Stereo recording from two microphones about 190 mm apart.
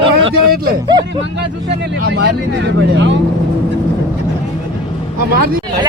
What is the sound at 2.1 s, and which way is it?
Speech, 60° right (ahead or behind).